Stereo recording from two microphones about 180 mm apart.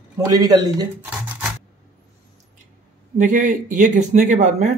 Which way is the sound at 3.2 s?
45° right (ahead or behind).